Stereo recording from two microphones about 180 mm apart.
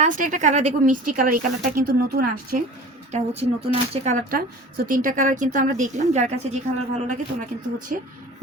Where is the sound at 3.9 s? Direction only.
40° right (ahead or behind).